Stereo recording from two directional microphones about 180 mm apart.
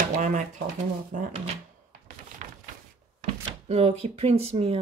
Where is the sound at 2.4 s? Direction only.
45° right (ahead or behind).